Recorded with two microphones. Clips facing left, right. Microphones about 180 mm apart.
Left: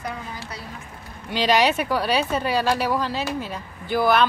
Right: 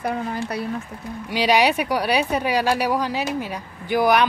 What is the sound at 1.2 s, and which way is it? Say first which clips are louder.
Speech: right 1 dB; 10° right (ahead or behind).